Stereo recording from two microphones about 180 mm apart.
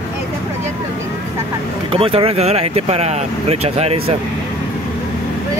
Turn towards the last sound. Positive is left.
turn(degrees=-35)  # may be behind; listen again after turning